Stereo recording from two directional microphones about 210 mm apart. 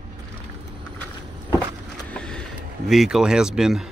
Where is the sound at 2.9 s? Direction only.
Centre (ahead or behind).